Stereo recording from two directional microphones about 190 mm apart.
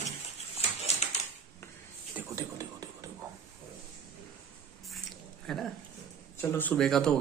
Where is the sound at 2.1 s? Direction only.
15° right (ahead or behind).